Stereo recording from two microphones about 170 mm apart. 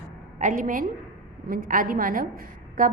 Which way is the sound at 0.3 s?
50° right (ahead or behind).